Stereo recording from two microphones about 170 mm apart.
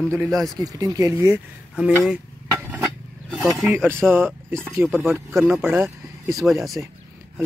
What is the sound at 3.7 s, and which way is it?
Speech, 15° right (ahead or behind).